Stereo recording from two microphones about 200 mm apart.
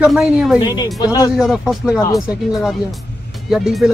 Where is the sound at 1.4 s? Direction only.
Centre (ahead or behind).